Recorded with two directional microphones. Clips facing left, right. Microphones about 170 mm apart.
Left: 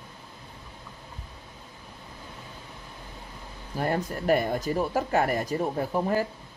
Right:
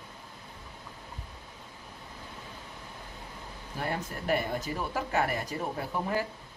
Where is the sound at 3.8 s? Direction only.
40° left (ahead or behind).